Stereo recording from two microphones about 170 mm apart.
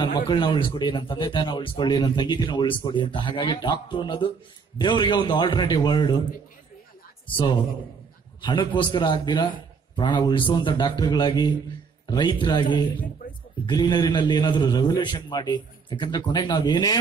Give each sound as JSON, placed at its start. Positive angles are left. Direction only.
{"t": 0.0, "sound": "a man's voice", "side_deg": 25}
{"t": 8.4, "sound": "a man's voice", "side_deg": 25}